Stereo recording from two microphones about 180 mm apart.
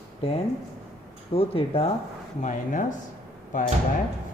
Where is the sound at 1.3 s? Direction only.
35° left (ahead or behind).